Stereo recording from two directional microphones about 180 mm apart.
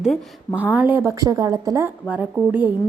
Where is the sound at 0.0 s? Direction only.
5° right (ahead or behind).